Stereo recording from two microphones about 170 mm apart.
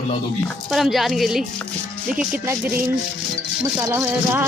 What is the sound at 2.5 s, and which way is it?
Speech, 15° right (ahead or behind).